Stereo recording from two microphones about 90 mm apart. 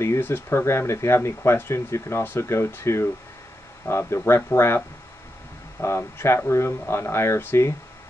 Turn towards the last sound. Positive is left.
turn(degrees=30)  # may be behind; listen again after turning